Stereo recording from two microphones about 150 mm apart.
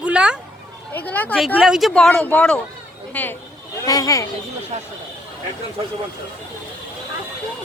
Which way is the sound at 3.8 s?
25° left (ahead or behind).